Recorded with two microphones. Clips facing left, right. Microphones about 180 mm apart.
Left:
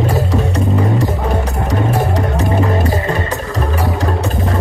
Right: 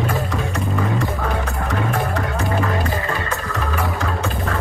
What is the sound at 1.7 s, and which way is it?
Vehicle, 35° left (ahead or behind).